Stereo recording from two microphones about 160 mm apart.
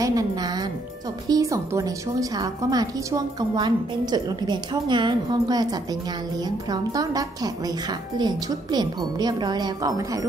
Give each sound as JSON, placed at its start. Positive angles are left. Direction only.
{"t": 0.0, "sound": "a woman's voice", "side_deg": -20}
{"t": 6.7, "sound": "a woman's voice", "side_deg": -25}